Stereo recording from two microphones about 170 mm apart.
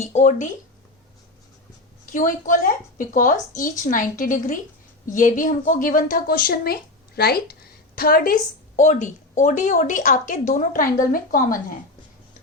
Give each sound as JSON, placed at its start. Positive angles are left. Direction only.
{"t": 0.0, "sound": "speech", "side_deg": 40}
{"t": 2.1, "sound": "a woman's voice", "side_deg": 50}